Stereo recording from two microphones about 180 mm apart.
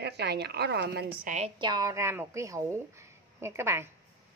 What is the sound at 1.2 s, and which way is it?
Speech, 40° right (ahead or behind).